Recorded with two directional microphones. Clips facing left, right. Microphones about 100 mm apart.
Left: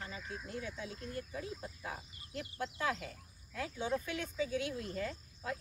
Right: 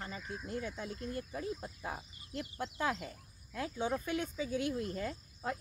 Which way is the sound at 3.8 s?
45° right (ahead or behind).